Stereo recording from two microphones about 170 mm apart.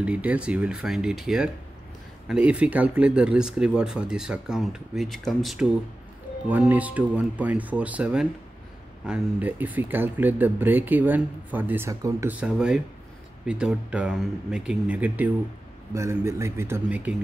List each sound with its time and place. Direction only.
0.0 s speech: 10° right (ahead or behind)